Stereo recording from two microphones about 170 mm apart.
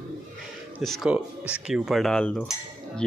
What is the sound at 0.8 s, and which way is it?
A man's voice, centre (ahead or behind).